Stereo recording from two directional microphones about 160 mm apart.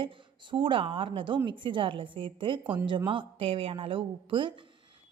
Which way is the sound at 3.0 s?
35° right (ahead or behind).